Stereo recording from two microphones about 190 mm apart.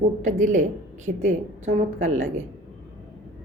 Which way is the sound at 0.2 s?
40° right (ahead or behind).